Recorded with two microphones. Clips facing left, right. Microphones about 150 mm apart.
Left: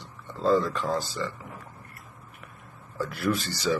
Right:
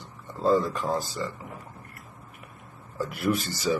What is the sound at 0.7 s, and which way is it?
Speech, centre (ahead or behind).